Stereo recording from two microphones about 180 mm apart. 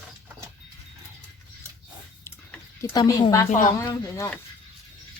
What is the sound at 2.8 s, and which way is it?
Speech, 20° left (ahead or behind).